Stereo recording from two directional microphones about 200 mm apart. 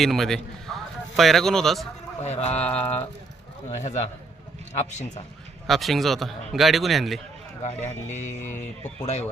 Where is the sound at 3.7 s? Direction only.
35° left (ahead or behind).